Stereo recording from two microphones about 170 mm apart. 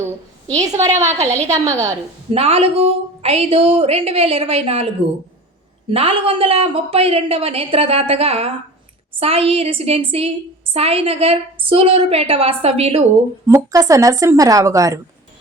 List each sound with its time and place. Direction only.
0.8 s a woman's voice: 15° right (ahead or behind)
1.0 s a woman's voice: 40° right (ahead or behind)
1.5 s a woman's voice: 20° right (ahead or behind)
2.3 s a woman's voice: 35° right (ahead or behind)
5.9 s a woman's voice: 35° right (ahead or behind)
13.5 s a woman's voice: 20° right (ahead or behind)